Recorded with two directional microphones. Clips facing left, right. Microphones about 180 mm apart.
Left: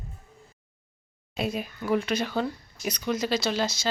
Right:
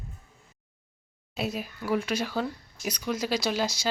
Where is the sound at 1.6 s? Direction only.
5° right (ahead or behind).